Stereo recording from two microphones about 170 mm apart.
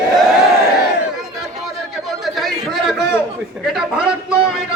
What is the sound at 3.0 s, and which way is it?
Speech, 15° left (ahead or behind).